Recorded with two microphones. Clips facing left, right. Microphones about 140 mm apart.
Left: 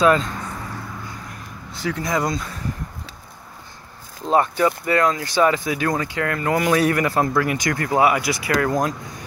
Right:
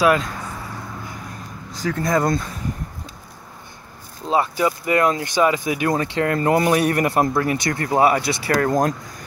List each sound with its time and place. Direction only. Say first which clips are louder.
0.0 s speech: left 1 dB; 5° right (ahead or behind)
1.7 s speech: right 3 dB; 40° right (ahead or behind)
4.3 s speech: left 1 dB; 10° right (ahead or behind); by 8.8 s 30° right (ahead or behind)